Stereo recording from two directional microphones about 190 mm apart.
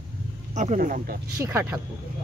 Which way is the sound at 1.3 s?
15° right (ahead or behind).